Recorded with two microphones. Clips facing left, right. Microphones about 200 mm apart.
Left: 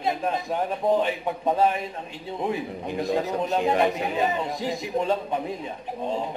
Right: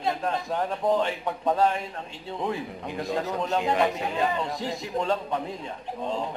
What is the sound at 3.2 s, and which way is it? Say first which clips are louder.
A man's voice: even; 15° left (ahead or behind).